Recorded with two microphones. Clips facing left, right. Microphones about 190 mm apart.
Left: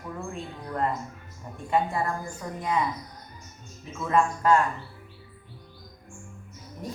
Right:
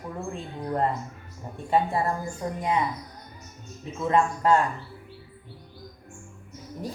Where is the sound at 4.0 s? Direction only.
25° right (ahead or behind).